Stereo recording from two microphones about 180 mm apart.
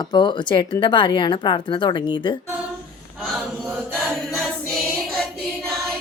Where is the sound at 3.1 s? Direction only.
Centre (ahead or behind).